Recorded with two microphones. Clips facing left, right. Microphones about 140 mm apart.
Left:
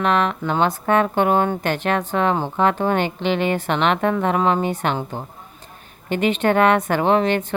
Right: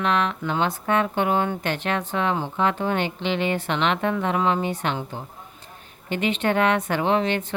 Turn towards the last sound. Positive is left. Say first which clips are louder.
# left 4 dB
turn(degrees=50)  # may be behind; listen again after turning